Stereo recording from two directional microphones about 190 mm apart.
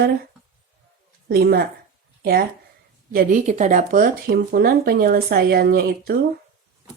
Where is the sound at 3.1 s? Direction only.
45° right (ahead or behind).